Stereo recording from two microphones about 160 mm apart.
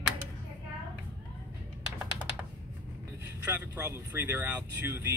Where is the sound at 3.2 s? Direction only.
10° right (ahead or behind).